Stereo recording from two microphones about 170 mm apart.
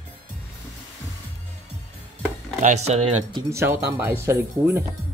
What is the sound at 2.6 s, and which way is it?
Speech, 40° right (ahead or behind).